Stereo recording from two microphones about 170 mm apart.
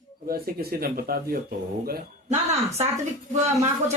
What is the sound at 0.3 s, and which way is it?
Speech, 60° right (ahead or behind).